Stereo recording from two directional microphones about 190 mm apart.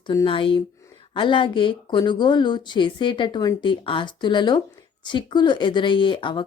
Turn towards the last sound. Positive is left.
turn(degrees=25)  # may be behind; listen again after turning